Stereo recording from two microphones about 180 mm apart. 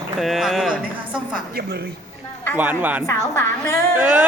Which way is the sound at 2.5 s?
10° right (ahead or behind).